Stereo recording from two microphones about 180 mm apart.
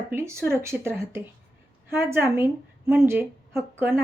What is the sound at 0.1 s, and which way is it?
A woman's voice, 15° right (ahead or behind).